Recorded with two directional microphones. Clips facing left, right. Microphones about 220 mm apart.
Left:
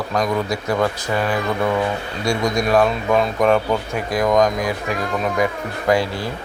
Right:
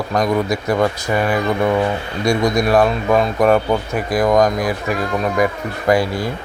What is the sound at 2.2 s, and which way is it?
Speech, 40° right (ahead or behind).